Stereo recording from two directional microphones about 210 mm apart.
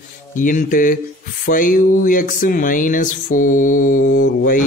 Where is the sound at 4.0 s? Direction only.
70° left (ahead or behind).